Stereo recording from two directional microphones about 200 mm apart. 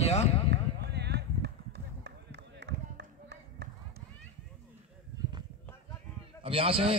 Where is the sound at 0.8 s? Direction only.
55° right (ahead or behind).